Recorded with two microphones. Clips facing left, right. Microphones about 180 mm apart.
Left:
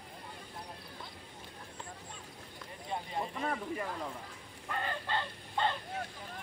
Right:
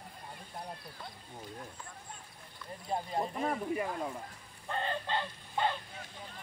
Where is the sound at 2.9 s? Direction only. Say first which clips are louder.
Right 3 dB; 35° right (ahead or behind).